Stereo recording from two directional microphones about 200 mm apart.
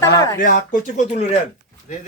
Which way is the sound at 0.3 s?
40° left (ahead or behind).